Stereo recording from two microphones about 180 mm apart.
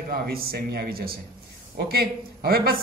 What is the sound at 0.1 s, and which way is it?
Speech, 60° right (ahead or behind).